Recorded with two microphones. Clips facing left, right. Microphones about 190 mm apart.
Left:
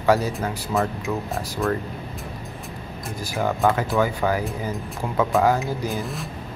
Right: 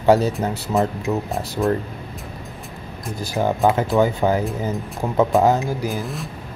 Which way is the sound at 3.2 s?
25° right (ahead or behind).